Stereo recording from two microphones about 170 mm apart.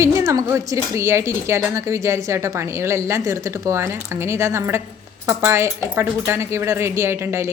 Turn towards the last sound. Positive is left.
turn(degrees=-15)  # may be behind; listen again after turning